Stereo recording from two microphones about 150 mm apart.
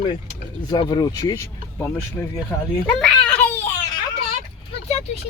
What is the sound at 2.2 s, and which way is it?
Speech, 15° left (ahead or behind).